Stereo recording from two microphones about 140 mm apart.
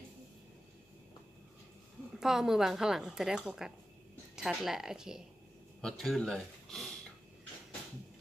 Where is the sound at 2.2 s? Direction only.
5° right (ahead or behind).